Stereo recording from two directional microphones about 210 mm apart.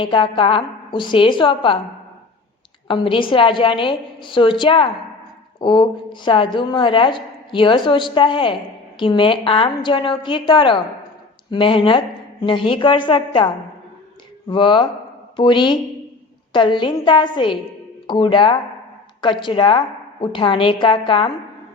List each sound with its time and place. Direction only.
0.0 s a woman's voice: 25° left (ahead or behind)
2.8 s a woman's voice: 25° left (ahead or behind)
14.5 s a woman's voice: 20° left (ahead or behind)